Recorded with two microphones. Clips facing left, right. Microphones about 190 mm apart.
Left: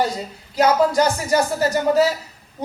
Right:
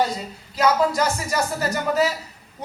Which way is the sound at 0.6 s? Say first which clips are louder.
Left 3 dB; 30° left (ahead or behind).